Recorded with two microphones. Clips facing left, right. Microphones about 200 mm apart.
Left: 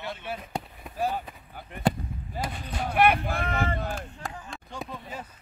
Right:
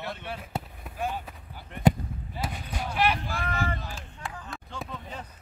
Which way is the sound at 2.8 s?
55° left (ahead or behind).